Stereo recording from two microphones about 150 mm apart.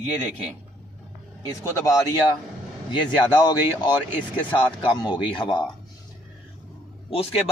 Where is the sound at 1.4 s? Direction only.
20° left (ahead or behind).